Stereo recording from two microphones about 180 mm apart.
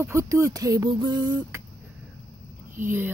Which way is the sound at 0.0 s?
15° right (ahead or behind).